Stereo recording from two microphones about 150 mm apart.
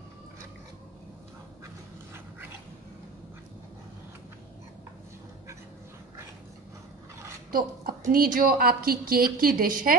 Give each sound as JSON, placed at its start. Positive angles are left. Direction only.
{"t": 7.5, "sound": "a woman's voice", "side_deg": -75}